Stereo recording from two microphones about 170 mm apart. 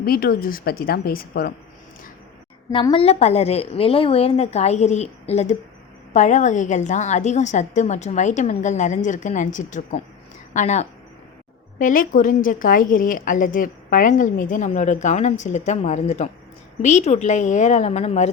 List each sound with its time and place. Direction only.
0.0 s speech: 60° left (ahead or behind)
2.7 s a woman's voice: 30° left (ahead or behind)